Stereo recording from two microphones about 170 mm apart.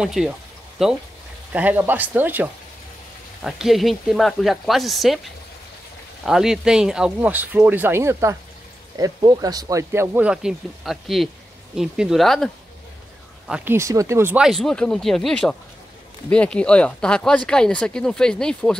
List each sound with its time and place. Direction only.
0.0 s speech: centre (ahead or behind)
6.2 s speech: 5° right (ahead or behind)
13.5 s speech: 15° right (ahead or behind); by 18.8 s 5° left (ahead or behind)